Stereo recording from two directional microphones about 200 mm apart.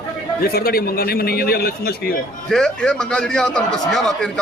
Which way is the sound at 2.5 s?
5° left (ahead or behind).